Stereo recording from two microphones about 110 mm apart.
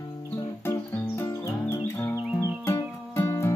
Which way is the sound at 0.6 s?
20° left (ahead or behind).